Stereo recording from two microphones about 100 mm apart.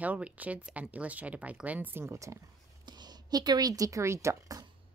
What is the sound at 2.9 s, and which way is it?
Speech, 45° right (ahead or behind).